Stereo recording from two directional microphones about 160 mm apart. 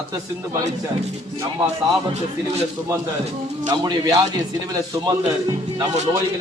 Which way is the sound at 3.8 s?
25° right (ahead or behind).